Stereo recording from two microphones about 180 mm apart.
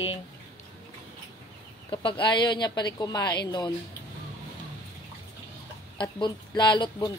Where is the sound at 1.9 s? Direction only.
25° left (ahead or behind).